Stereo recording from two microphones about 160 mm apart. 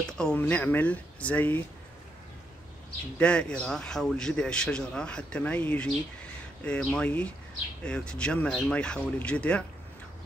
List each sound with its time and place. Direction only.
0.2 s speech: 5° left (ahead or behind)
3.2 s a man's voice: 5° left (ahead or behind)